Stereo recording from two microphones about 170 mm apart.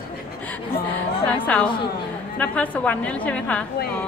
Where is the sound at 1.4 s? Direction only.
10° left (ahead or behind).